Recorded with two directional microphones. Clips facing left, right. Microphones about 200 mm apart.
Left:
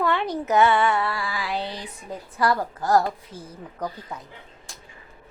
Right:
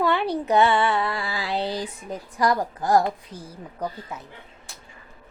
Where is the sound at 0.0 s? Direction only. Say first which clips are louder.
Right 1 dB; 10° right (ahead or behind).